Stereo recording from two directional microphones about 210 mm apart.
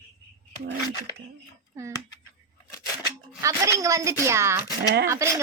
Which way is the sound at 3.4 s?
15° right (ahead or behind).